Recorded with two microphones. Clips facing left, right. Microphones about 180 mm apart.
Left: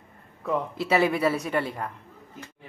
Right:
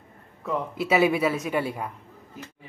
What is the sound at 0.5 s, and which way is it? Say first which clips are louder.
Speech: even; 5° right (ahead or behind).